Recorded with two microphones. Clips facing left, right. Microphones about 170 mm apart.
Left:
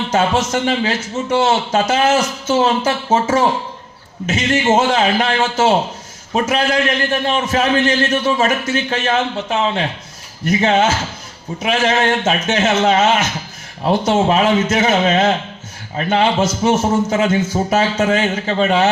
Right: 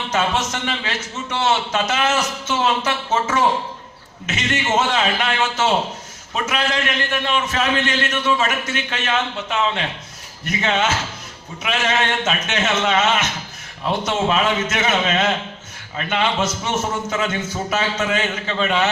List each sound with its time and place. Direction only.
0.1 s a man's voice: 35° left (ahead or behind)